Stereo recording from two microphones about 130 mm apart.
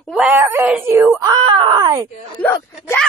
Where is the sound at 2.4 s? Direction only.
20° left (ahead or behind).